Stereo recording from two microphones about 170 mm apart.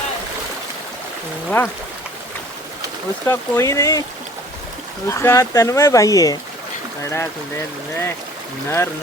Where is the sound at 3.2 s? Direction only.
15° left (ahead or behind).